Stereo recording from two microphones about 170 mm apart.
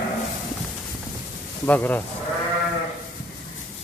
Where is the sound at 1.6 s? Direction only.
10° left (ahead or behind).